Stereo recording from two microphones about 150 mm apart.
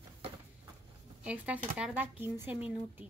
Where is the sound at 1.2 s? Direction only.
10° right (ahead or behind).